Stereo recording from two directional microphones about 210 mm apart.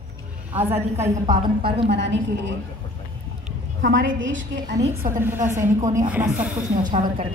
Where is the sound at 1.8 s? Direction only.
55° right (ahead or behind).